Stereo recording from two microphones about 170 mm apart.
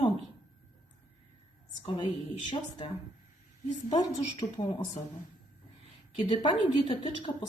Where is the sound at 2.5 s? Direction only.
30° left (ahead or behind).